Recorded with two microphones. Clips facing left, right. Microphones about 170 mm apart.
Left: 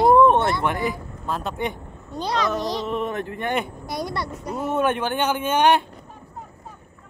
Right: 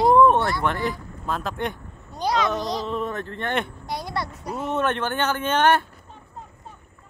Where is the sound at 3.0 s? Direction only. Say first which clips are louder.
Left 2 dB; 20° left (ahead or behind).